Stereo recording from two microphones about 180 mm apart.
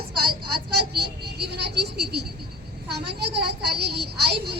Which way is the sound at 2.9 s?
65° right (ahead or behind).